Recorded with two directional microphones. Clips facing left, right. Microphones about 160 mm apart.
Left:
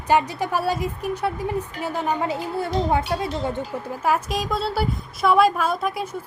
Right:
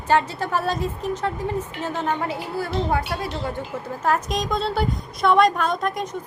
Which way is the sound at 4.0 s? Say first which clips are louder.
Even; 10° left (ahead or behind).